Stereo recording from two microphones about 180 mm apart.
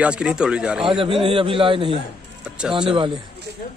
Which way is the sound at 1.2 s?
30° right (ahead or behind).